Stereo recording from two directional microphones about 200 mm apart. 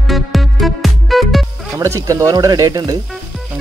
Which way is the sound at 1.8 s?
15° right (ahead or behind).